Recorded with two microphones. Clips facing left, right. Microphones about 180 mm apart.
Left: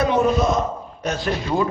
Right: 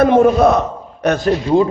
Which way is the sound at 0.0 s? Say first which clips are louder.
Right 8 dB; 55° right (ahead or behind).